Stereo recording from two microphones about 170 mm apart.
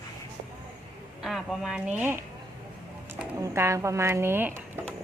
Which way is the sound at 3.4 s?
15° right (ahead or behind).